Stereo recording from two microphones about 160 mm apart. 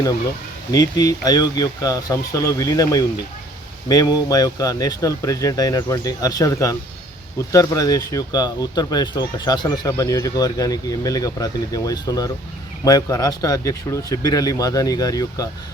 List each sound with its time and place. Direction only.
0.7 s speech: 25° left (ahead or behind)